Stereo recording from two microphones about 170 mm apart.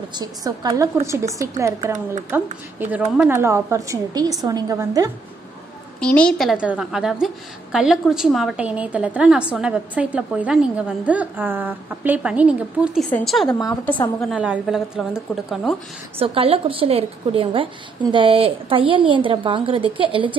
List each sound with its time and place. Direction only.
0.1 s a woman's voice: 20° right (ahead or behind)
5.9 s a woman's voice: 5° left (ahead or behind)
16.2 s a woman's voice: 35° right (ahead or behind)